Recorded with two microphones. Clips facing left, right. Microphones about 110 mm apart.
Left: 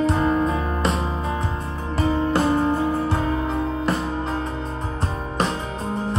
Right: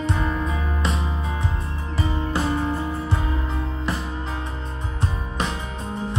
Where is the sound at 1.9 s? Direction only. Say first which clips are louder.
Left 5 dB; 55° left (ahead or behind).